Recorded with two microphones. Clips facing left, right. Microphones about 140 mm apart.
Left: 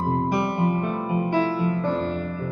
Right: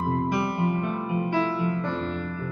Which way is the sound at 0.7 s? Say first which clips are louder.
Left 2 dB; 40° left (ahead or behind).